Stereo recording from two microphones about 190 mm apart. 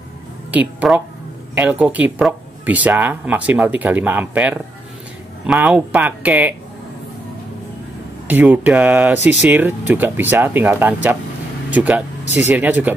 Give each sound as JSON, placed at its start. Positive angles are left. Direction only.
{"t": 0.5, "sound": "speech", "side_deg": -10}
{"t": 8.3, "sound": "speech", "side_deg": -10}